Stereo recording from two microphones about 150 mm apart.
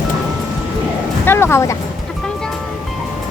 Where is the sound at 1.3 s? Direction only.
15° left (ahead or behind).